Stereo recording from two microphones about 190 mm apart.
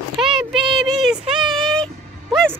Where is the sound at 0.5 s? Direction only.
25° right (ahead or behind).